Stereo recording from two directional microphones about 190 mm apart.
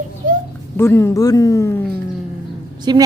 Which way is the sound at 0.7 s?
15° left (ahead or behind).